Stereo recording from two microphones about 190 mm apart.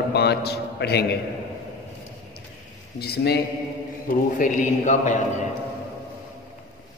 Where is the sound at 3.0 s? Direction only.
55° left (ahead or behind).